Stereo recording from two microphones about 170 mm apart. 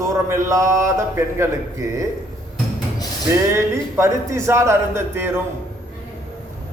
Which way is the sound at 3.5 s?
15° right (ahead or behind).